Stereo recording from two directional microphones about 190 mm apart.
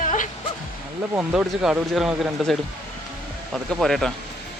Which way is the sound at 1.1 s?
5° right (ahead or behind).